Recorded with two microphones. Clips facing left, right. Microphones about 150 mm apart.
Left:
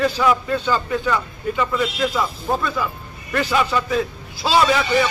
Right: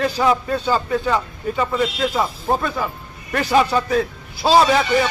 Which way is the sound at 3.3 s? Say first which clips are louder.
Right 3 dB; 40° right (ahead or behind).